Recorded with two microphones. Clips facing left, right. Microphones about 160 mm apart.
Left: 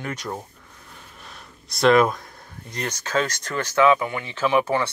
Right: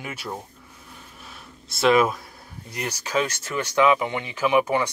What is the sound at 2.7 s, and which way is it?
Speech, 10° right (ahead or behind).